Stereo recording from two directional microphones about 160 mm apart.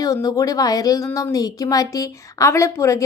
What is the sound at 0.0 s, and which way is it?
Speech, 20° left (ahead or behind).